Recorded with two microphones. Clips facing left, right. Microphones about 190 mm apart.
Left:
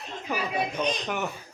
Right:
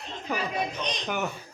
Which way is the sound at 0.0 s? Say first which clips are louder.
Even; 5° left (ahead or behind).